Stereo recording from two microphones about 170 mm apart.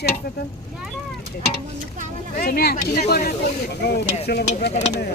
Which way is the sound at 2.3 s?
60° left (ahead or behind).